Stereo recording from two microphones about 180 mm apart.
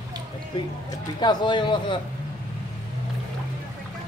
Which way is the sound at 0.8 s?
25° left (ahead or behind).